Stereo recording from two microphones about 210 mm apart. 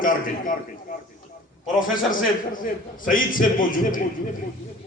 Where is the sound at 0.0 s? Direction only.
40° left (ahead or behind).